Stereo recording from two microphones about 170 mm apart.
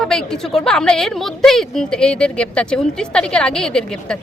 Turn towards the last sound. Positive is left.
turn(degrees=5)  # may be behind; listen again after turning